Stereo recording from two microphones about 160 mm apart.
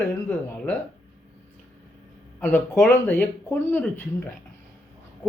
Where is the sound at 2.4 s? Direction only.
15° left (ahead or behind).